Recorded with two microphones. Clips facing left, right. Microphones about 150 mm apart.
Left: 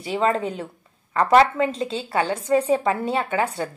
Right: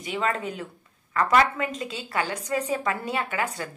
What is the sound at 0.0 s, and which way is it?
A woman's voice, 30° left (ahead or behind).